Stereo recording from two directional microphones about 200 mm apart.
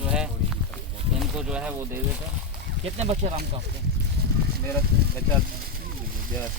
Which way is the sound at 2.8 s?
30° right (ahead or behind).